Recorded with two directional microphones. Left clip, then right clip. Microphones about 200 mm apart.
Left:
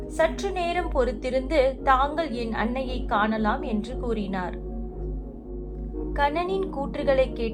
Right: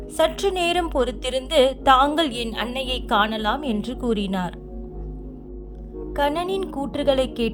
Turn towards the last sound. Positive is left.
turn(degrees=-45)  # may be behind; listen again after turning